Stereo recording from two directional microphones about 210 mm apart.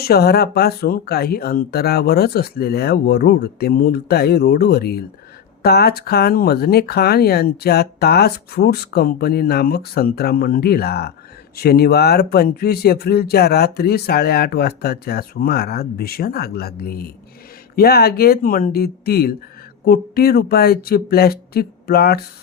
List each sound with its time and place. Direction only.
0.0 s speech: 50° left (ahead or behind)